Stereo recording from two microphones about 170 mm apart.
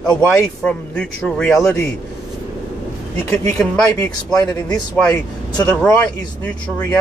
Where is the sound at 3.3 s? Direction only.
5° left (ahead or behind).